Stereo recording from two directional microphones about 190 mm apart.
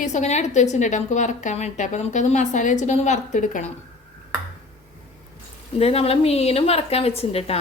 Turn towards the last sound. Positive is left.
turn(degrees=30)  # may be behind; listen again after turning